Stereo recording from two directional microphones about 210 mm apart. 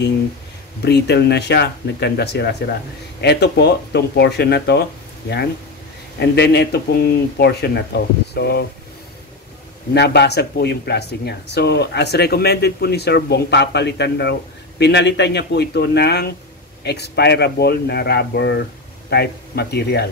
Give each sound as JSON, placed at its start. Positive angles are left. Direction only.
{"t": 0.8, "sound": "speech", "side_deg": 50}
{"t": 6.1, "sound": "speech", "side_deg": 50}
{"t": 9.9, "sound": "speech", "side_deg": 50}